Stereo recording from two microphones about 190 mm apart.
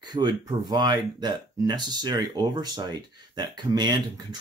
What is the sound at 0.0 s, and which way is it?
Speech, 20° right (ahead or behind).